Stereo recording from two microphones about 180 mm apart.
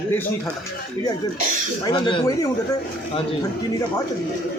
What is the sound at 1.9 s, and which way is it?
Speech, 25° left (ahead or behind).